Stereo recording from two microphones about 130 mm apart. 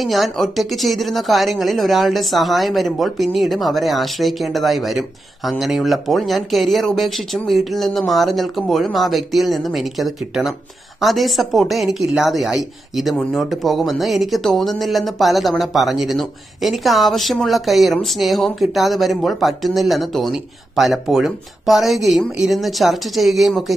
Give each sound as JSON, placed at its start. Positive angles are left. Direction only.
{"t": 0.0, "sound": "a woman's voice", "side_deg": 0}